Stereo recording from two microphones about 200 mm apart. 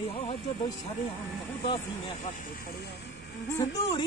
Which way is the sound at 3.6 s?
20° left (ahead or behind).